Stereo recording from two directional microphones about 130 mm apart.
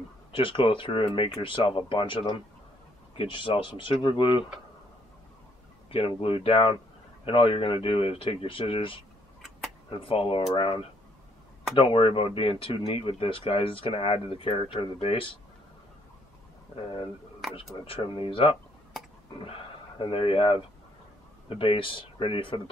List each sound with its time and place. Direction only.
0.3 s speech: 40° left (ahead or behind)
5.9 s speech: 45° left (ahead or behind)
16.7 s speech: 40° left (ahead or behind)